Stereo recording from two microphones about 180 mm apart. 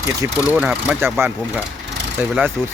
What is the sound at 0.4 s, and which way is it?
Speech, 5° right (ahead or behind).